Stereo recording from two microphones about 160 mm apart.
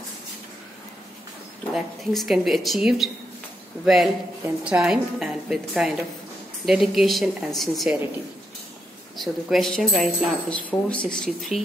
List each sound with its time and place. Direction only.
1.7 s speech: centre (ahead or behind)
9.1 s speech: centre (ahead or behind)